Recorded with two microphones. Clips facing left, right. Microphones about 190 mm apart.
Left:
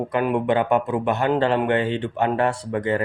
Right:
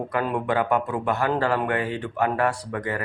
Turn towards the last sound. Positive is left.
turn(degrees=25)  # may be behind; listen again after turning